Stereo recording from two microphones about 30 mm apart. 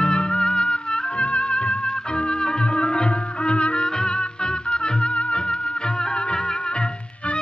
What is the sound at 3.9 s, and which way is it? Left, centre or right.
Music, left.